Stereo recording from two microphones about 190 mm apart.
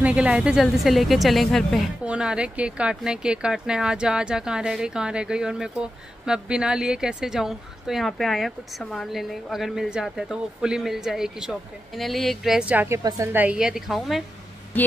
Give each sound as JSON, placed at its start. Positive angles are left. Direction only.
{"t": 0.0, "sound": "a woman's voice", "side_deg": -5}